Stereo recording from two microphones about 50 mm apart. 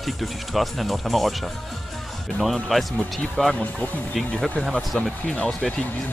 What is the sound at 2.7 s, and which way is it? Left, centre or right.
Speech, centre.